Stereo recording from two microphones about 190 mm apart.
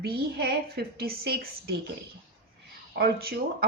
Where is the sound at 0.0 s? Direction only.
55° right (ahead or behind).